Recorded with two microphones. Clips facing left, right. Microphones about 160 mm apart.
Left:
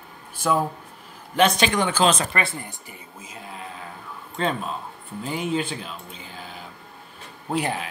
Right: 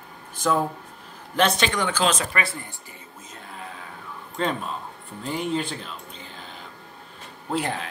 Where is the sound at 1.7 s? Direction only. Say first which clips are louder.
Left 3 dB; 20° left (ahead or behind).